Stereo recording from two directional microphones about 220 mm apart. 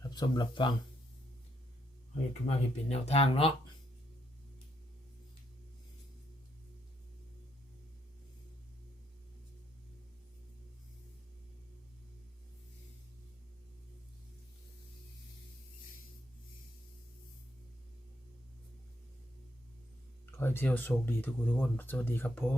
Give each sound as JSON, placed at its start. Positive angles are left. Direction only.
{"t": 0.0, "sound": "speech", "side_deg": 20}
{"t": 2.5, "sound": "speech", "side_deg": 30}
{"t": 20.3, "sound": "speech", "side_deg": 10}